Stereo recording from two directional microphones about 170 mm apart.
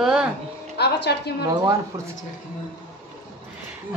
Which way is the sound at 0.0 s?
5° right (ahead or behind).